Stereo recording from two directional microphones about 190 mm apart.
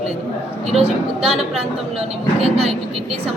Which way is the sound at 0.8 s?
30° right (ahead or behind).